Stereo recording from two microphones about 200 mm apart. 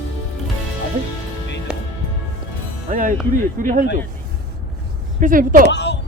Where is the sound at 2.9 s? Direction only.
40° right (ahead or behind).